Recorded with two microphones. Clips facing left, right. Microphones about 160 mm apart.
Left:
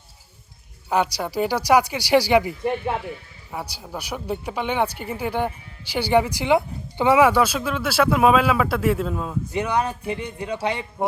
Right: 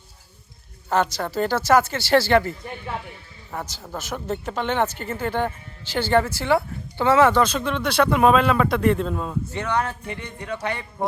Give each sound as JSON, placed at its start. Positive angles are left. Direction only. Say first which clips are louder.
{"t": 0.9, "sound": "speech", "louder": "even", "side_deg": 10}
{"t": 9.5, "sound": "speech", "louder": "left 3 dB", "side_deg": 10}